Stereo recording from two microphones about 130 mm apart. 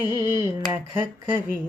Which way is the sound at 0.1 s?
20° right (ahead or behind).